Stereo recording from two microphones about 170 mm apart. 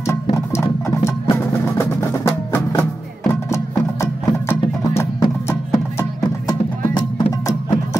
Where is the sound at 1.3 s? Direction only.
15° left (ahead or behind).